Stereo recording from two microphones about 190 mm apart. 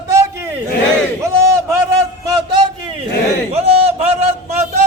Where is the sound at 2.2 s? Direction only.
20° right (ahead or behind).